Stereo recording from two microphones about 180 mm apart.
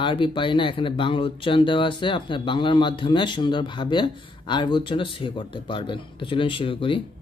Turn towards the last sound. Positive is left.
turn(degrees=30)  # may be behind; listen again after turning